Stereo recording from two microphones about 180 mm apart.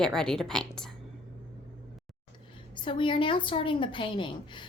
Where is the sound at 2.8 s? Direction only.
30° left (ahead or behind).